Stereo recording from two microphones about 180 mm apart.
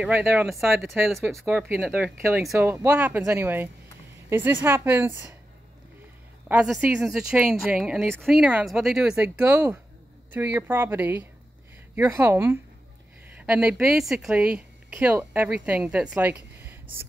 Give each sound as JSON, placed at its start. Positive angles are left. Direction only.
{"t": 0.0, "sound": "speech", "side_deg": -10}
{"t": 6.5, "sound": "speech", "side_deg": -5}